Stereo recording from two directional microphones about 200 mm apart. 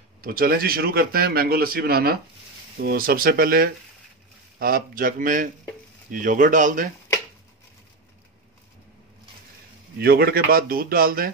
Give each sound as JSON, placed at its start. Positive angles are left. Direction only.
{"t": 0.2, "sound": "a man's voice", "side_deg": -45}
{"t": 9.9, "sound": "a man's voice", "side_deg": -50}